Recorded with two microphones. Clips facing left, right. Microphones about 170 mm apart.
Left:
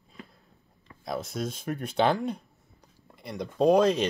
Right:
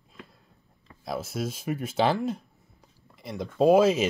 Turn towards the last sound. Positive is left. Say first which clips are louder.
# right 2 dB
turn(degrees=-5)  # may be behind; listen again after turning